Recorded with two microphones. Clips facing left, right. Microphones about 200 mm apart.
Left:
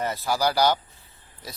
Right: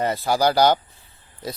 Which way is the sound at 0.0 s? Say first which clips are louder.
Right 5 dB; 55° right (ahead or behind).